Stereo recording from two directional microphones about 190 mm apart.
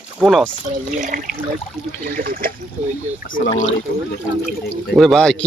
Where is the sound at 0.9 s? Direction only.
40° right (ahead or behind).